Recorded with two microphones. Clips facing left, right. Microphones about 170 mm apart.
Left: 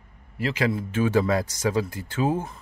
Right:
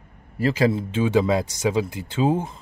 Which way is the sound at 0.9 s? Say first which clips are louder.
Right 2 dB; 15° right (ahead or behind).